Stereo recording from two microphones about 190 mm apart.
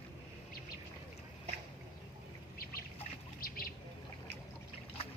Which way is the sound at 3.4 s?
50° left (ahead or behind).